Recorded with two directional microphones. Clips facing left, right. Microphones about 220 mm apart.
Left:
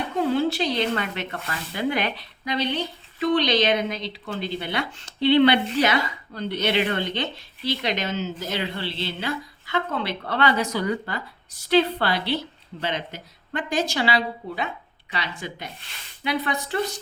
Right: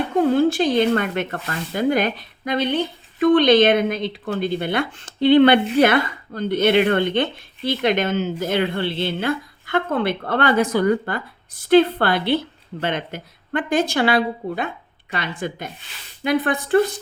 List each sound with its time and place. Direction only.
0.1 s speech: 50° right (ahead or behind)